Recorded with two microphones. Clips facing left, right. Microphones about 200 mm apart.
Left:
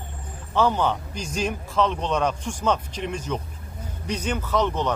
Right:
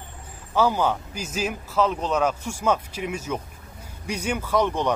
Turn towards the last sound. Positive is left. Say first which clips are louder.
# right 1 dB
turn(degrees=-10)  # may be behind; listen again after turning